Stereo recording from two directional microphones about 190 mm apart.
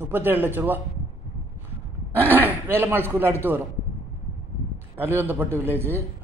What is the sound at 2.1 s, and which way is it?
A man's voice, 10° right (ahead or behind).